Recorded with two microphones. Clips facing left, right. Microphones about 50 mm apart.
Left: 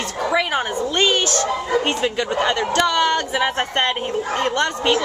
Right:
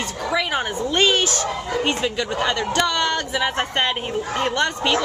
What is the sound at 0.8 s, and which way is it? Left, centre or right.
Speech, centre.